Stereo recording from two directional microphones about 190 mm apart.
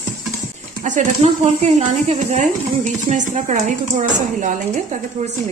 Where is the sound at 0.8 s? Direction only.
40° right (ahead or behind).